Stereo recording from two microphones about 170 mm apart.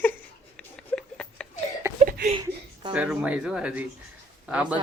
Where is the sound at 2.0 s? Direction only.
45° right (ahead or behind).